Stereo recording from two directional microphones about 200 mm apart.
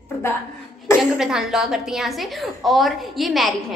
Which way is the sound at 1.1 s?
Centre (ahead or behind).